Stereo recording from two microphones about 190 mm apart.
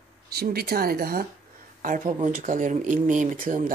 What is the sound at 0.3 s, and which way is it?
Speech, 55° right (ahead or behind).